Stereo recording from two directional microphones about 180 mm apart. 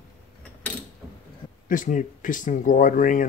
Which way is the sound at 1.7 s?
45° left (ahead or behind).